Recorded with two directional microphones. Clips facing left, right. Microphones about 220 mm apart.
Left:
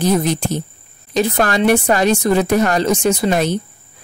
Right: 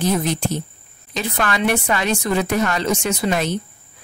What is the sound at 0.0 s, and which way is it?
Speech, 40° left (ahead or behind).